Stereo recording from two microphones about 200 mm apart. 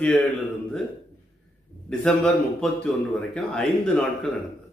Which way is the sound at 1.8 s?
5° left (ahead or behind).